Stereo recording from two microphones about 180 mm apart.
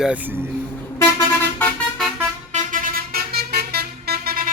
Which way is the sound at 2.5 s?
45° right (ahead or behind).